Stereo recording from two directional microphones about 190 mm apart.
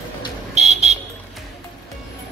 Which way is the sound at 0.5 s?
35° right (ahead or behind).